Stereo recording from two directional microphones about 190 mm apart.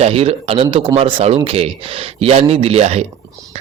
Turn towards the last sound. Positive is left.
turn(degrees=-35)  # may be behind; listen again after turning